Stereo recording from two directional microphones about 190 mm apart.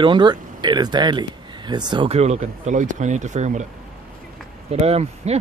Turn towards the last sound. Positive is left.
turn(degrees=-35)  # may be behind; listen again after turning